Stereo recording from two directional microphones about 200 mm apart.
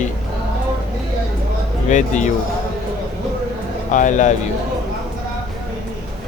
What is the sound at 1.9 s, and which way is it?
Speech, 35° left (ahead or behind).